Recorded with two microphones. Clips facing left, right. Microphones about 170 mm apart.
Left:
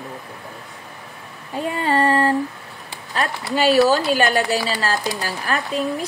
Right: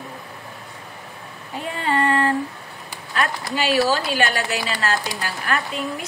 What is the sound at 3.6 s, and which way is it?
Speech, 40° left (ahead or behind).